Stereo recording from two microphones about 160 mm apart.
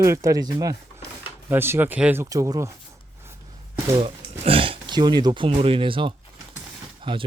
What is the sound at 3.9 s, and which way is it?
Speech, 35° right (ahead or behind).